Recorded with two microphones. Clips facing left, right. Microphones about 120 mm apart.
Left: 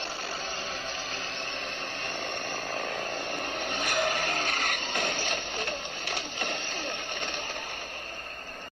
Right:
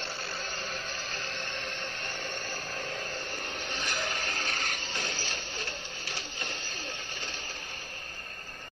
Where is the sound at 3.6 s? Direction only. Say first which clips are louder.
Left 7 dB; 55° left (ahead or behind).